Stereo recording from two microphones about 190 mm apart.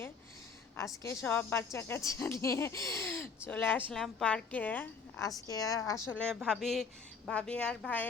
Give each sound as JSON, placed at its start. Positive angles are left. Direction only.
{"t": 1.0, "sound": "speech", "side_deg": 15}
{"t": 6.1, "sound": "a woman's voice", "side_deg": 5}